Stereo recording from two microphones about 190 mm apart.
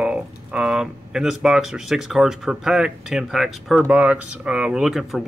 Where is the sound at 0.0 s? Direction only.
5° right (ahead or behind).